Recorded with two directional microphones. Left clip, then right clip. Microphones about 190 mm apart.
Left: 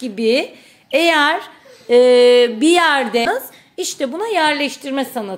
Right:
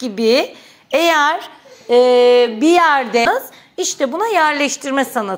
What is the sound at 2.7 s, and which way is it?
Speech, 15° left (ahead or behind).